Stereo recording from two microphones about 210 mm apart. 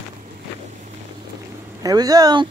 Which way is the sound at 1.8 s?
15° right (ahead or behind).